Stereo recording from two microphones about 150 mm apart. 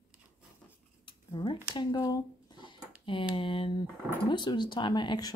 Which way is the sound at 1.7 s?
30° left (ahead or behind).